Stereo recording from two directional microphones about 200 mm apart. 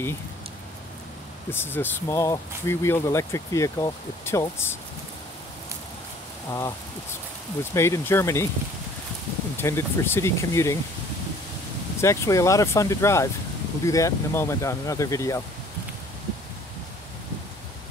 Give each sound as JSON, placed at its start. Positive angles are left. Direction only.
{"t": 1.5, "sound": "speech", "side_deg": 10}
{"t": 7.7, "sound": "speech", "side_deg": 15}
{"t": 9.6, "sound": "speech", "side_deg": 10}
{"t": 12.0, "sound": "speech", "side_deg": 15}